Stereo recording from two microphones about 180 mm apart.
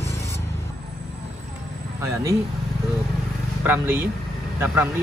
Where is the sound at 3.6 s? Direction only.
10° right (ahead or behind).